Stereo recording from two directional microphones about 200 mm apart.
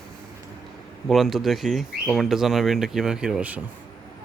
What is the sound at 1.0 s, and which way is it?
Speech, centre (ahead or behind).